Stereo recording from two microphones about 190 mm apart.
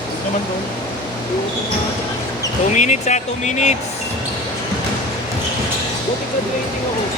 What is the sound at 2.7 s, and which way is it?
Speech, 40° left (ahead or behind).